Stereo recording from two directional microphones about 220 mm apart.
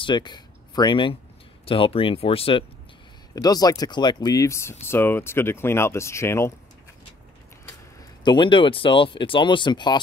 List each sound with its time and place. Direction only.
0.0 s speech: 20° left (ahead or behind)
8.2 s speech: 20° left (ahead or behind)